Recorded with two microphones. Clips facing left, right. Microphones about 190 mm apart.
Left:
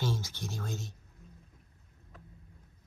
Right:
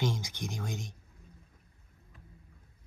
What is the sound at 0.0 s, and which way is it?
Speech, 15° right (ahead or behind).